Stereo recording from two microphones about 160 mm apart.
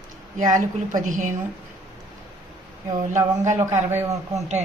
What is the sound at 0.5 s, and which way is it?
Speech, 55° right (ahead or behind).